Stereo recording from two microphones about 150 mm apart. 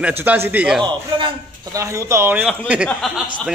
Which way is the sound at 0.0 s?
10° right (ahead or behind).